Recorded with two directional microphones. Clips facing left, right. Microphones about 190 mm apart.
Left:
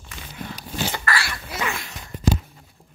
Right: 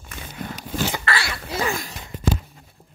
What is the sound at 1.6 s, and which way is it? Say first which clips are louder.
Gasp: right 4 dB; 35° right (ahead or behind).